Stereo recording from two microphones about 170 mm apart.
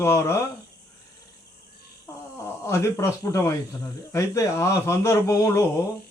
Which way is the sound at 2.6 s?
15° left (ahead or behind).